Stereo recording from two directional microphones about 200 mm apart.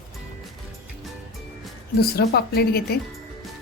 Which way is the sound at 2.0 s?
50° left (ahead or behind).